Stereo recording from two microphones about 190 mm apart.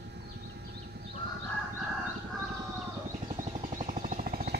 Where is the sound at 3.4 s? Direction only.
40° right (ahead or behind).